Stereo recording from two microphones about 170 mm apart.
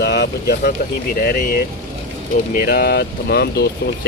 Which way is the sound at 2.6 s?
65° left (ahead or behind).